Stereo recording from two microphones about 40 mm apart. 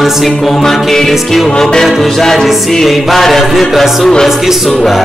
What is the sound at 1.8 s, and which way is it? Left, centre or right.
Music, centre.